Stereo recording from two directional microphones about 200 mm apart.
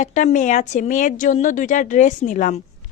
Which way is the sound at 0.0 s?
35° left (ahead or behind).